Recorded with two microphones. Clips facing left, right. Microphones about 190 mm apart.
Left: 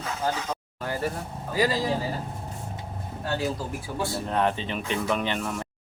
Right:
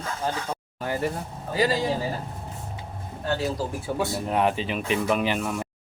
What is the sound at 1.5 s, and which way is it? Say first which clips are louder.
Speech: right 1 dB; 25° right (ahead or behind).